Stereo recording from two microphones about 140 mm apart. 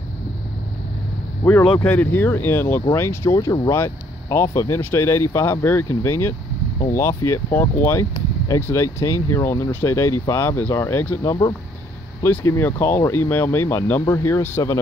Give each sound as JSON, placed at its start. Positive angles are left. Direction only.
{"t": 1.8, "sound": "speech", "side_deg": 15}